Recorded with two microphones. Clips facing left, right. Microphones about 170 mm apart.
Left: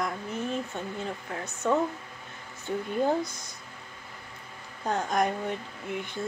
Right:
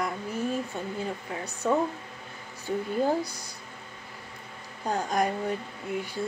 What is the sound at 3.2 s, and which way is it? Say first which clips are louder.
Speech: even; 35° right (ahead or behind).